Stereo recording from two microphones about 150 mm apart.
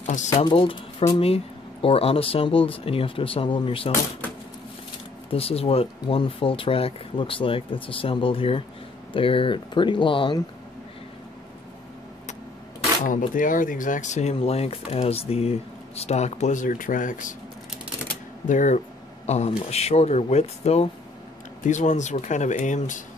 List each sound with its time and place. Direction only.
0.0 s a sound: 55° left (ahead or behind)
0.4 s speech: 35° left (ahead or behind)
5.3 s speech: 40° left (ahead or behind)
13.3 s speech: 60° left (ahead or behind)
18.5 s speech: 55° left (ahead or behind)